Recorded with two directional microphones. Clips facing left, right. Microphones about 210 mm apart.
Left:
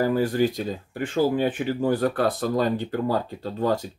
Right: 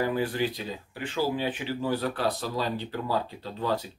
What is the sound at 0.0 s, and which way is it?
Speech, 40° left (ahead or behind).